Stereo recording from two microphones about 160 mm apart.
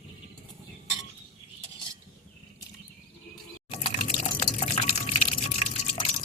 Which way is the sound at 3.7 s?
40° left (ahead or behind).